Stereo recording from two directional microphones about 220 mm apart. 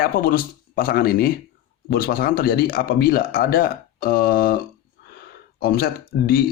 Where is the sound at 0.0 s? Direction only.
40° left (ahead or behind).